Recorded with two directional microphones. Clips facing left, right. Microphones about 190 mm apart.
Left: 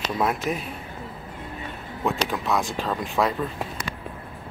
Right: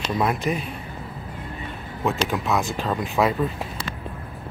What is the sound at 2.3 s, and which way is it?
Speech, centre (ahead or behind).